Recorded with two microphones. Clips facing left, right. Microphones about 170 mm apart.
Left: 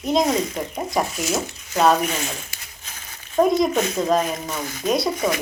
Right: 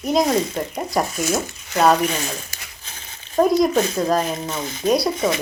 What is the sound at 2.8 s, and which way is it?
Crumpling, 30° right (ahead or behind).